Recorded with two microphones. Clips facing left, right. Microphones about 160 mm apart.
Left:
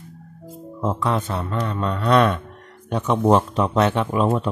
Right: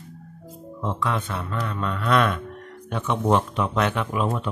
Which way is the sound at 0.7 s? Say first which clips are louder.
Left 4 dB; 40° left (ahead or behind).